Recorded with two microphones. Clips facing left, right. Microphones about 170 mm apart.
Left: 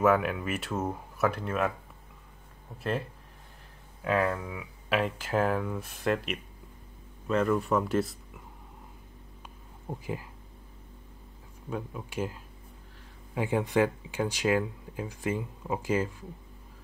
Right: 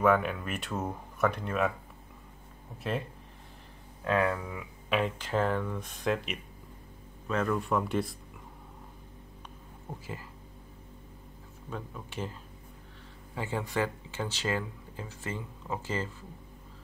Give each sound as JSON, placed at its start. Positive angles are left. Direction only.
{"t": 0.0, "sound": "speech", "side_deg": 5}
{"t": 4.0, "sound": "speech", "side_deg": 5}
{"t": 9.8, "sound": "speech", "side_deg": 15}
{"t": 11.7, "sound": "speech", "side_deg": 10}